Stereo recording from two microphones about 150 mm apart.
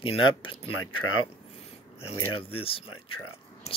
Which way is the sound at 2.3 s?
40° left (ahead or behind).